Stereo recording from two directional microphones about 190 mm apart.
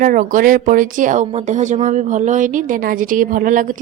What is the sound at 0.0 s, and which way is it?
Speech, 45° right (ahead or behind).